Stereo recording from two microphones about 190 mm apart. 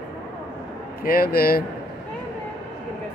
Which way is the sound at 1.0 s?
50° left (ahead or behind).